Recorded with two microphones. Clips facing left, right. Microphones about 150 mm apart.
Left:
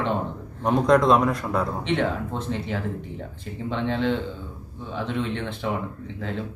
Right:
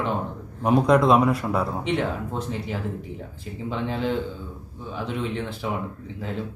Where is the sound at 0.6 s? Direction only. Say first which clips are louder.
Even; 5° right (ahead or behind).